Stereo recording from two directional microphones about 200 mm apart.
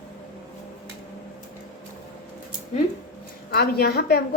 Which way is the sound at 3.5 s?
50° left (ahead or behind).